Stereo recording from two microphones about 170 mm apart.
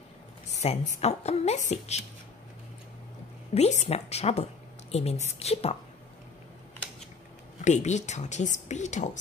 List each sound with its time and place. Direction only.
0.5 s speech: 40° left (ahead or behind)
3.5 s speech: 40° left (ahead or behind)
7.6 s speech: 45° left (ahead or behind)